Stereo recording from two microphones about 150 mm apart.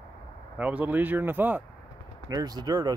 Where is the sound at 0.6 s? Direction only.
10° right (ahead or behind).